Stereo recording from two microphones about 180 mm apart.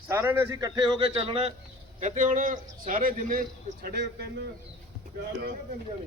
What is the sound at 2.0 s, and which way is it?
A man's voice, 45° right (ahead or behind).